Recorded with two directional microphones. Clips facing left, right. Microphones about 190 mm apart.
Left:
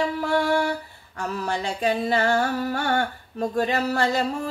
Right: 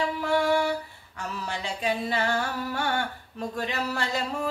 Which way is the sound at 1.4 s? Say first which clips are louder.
Left 6 dB; 45° left (ahead or behind).